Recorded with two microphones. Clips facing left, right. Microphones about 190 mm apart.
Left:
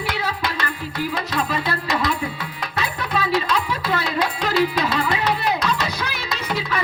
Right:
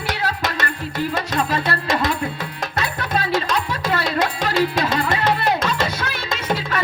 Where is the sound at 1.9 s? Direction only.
45° right (ahead or behind).